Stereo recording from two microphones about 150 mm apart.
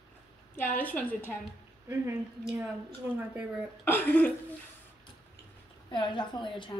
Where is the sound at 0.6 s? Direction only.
10° left (ahead or behind).